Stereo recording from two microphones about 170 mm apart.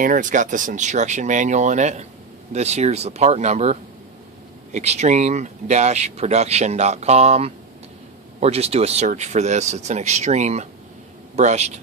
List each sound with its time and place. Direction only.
0.0 s speech: 50° right (ahead or behind)
4.7 s speech: 40° right (ahead or behind)